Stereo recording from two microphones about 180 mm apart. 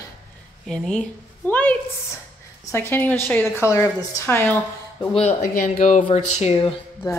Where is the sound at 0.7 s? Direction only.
5° left (ahead or behind).